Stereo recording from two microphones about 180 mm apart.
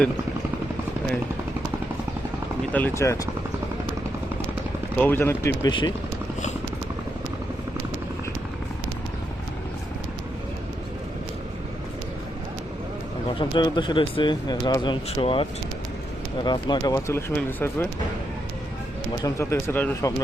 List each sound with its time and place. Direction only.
2.7 s speech: 15° left (ahead or behind)
4.9 s speech: 10° left (ahead or behind)
13.4 s speech: 25° left (ahead or behind)
19.2 s speech: 15° left (ahead or behind)